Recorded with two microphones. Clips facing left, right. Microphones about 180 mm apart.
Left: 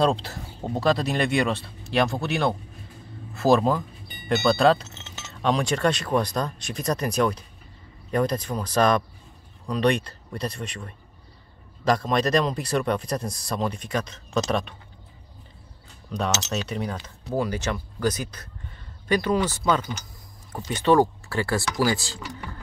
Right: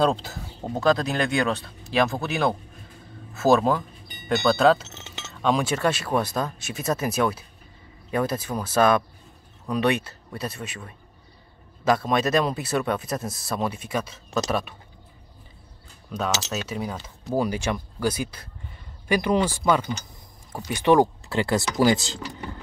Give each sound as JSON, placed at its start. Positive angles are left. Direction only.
{"t": 0.0, "sound": "speech", "side_deg": 0}
{"t": 16.1, "sound": "speech", "side_deg": 0}